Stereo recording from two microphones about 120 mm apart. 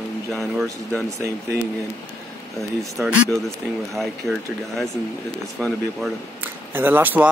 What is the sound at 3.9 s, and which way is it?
Speech, centre (ahead or behind).